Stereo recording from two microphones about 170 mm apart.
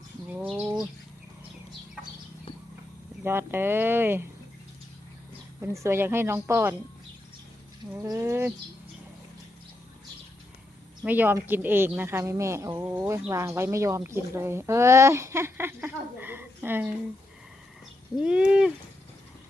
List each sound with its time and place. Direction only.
3.2 s speech: 15° right (ahead or behind)
5.5 s speech: 15° right (ahead or behind)
7.9 s speech: 20° right (ahead or behind)
11.0 s speech: 10° right (ahead or behind)
18.2 s a sound: 5° right (ahead or behind)